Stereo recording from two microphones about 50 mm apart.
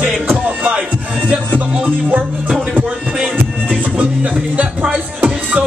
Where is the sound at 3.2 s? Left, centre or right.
Centre.